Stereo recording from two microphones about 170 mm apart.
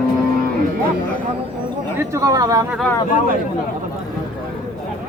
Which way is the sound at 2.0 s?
20° right (ahead or behind).